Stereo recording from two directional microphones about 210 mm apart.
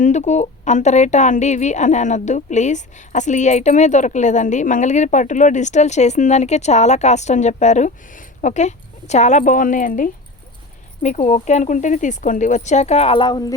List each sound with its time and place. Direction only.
0.0 s speech: 35° left (ahead or behind)